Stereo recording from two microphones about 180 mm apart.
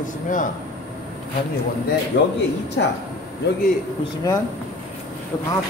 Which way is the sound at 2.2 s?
80° left.